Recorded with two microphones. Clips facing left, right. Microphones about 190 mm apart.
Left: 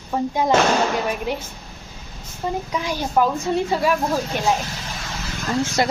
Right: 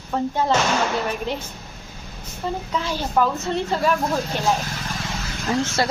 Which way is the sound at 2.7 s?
15° left (ahead or behind).